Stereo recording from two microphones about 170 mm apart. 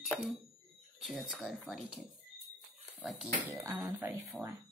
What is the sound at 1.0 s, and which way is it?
Speech, centre (ahead or behind).